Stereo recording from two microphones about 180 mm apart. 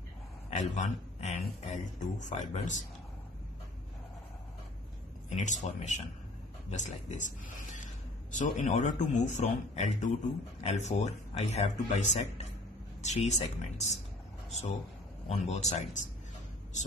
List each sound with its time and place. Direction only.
0.5 s speech: 40° left (ahead or behind)
5.3 s speech: 40° left (ahead or behind)
15.2 s speech: 35° left (ahead or behind)